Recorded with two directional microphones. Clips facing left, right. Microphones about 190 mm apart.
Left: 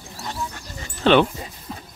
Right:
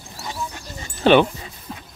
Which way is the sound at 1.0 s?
10° right (ahead or behind).